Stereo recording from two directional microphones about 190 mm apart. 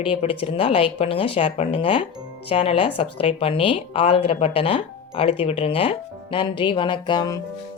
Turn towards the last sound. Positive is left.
turn(degrees=20)  # may be behind; listen again after turning